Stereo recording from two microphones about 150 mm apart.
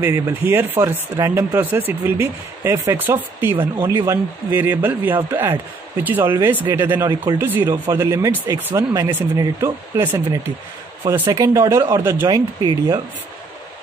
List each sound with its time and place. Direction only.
0.0 s speech: 15° right (ahead or behind)